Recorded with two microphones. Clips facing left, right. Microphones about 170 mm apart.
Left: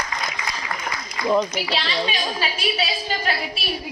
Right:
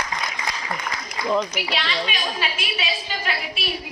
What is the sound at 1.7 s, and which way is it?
A woman's voice, 30° left (ahead or behind).